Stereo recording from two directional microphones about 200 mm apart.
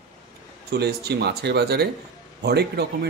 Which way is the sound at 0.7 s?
55° right (ahead or behind).